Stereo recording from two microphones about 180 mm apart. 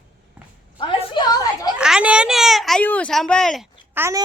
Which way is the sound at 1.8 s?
5° right (ahead or behind).